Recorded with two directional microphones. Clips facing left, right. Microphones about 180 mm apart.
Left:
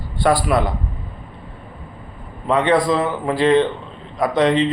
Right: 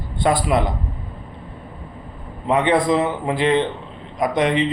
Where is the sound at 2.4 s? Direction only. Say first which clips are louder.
Left 1 dB; 20° right (ahead or behind).